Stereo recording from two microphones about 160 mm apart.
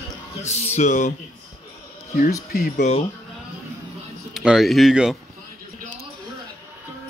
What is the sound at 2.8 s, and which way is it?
Speech, 45° left (ahead or behind).